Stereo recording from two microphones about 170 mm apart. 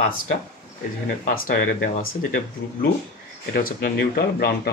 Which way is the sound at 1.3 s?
60° left (ahead or behind).